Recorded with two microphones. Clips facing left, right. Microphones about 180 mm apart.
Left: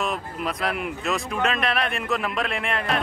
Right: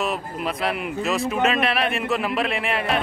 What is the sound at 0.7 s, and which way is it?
A man's voice, centre (ahead or behind).